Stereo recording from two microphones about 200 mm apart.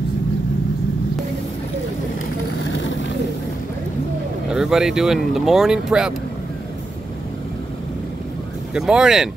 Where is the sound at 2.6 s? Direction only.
70° left (ahead or behind).